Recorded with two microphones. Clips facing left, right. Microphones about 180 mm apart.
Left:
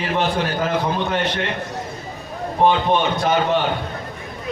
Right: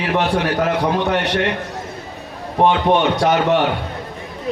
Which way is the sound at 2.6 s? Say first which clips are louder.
Right 2 dB; 70° right (ahead or behind).